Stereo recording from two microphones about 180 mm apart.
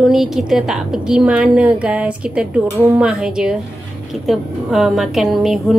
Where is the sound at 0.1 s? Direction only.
Centre (ahead or behind).